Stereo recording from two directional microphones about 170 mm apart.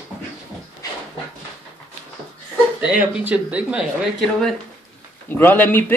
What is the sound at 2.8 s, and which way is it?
Speech, 10° right (ahead or behind).